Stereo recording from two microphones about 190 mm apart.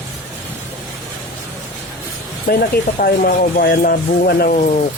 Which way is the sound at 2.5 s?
50° left (ahead or behind).